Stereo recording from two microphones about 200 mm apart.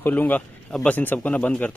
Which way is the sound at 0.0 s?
10° left (ahead or behind).